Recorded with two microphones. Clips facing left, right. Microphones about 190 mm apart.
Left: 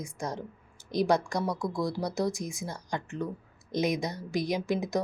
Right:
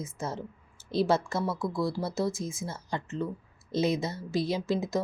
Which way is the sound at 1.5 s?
Centre (ahead or behind).